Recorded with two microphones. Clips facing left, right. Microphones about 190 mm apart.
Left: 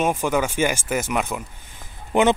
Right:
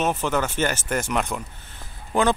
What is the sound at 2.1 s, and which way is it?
Speech, 20° left (ahead or behind).